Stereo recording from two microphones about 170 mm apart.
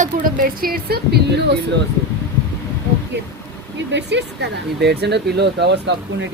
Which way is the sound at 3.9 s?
90° right.